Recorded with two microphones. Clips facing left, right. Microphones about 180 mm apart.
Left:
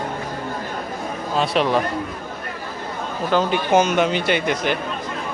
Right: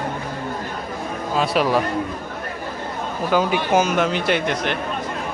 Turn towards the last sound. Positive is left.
turn(degrees=0)  # may be behind; listen again after turning